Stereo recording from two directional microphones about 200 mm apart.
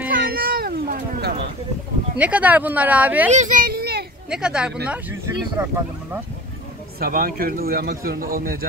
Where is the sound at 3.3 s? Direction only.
40° right (ahead or behind).